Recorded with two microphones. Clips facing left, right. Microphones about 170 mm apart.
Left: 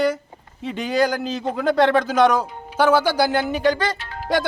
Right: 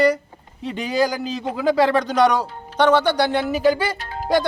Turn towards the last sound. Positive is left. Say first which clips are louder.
# right 3 dB
turn(degrees=-40)  # may be behind; listen again after turning